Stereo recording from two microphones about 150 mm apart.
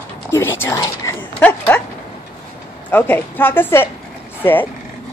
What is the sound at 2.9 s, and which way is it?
A woman's voice, 15° left (ahead or behind).